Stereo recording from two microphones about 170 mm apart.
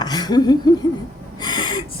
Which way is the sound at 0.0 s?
25° left (ahead or behind).